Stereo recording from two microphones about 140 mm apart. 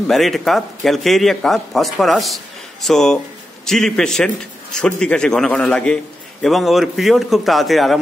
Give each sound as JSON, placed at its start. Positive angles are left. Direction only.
{"t": 0.1, "sound": "a man's voice", "side_deg": 0}